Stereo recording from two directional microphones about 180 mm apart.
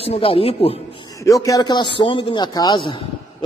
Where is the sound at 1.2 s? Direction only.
20° left (ahead or behind).